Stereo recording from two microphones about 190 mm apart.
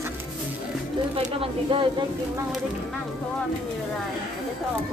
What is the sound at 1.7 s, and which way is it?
Speech, 25° right (ahead or behind).